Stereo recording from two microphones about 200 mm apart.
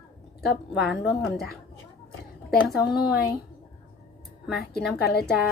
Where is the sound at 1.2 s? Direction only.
50° left (ahead or behind).